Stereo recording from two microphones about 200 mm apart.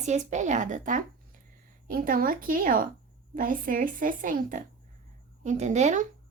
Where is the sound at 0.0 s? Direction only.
35° right (ahead or behind).